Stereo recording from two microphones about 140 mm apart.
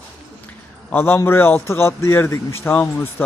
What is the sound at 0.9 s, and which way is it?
A man's voice, 15° left (ahead or behind).